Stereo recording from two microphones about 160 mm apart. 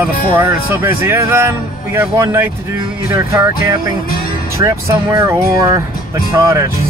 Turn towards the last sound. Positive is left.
turn(degrees=-20)  # may be behind; listen again after turning